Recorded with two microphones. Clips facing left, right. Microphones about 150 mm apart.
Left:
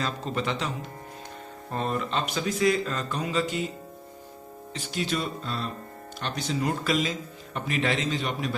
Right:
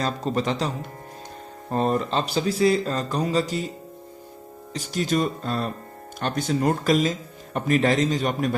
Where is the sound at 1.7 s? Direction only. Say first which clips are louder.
Right 6 dB; 40° right (ahead or behind).